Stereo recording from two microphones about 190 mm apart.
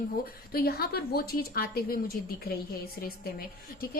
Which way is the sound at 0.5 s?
55° left (ahead or behind).